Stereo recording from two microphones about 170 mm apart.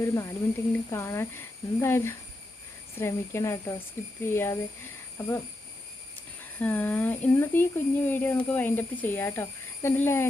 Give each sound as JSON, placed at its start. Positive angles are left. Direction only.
{"t": 0.0, "sound": "speech", "side_deg": 20}
{"t": 6.6, "sound": "speech", "side_deg": 10}